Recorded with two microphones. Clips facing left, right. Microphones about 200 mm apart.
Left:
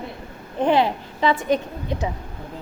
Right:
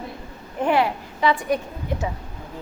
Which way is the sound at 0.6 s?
20° left (ahead or behind).